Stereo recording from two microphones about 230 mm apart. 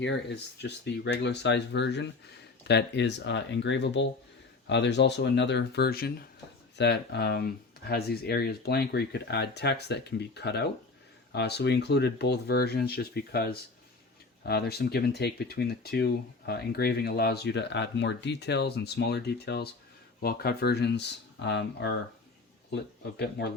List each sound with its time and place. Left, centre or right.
0.0 s speech: left